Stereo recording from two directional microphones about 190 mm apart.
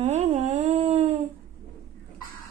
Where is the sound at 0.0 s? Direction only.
35° right (ahead or behind).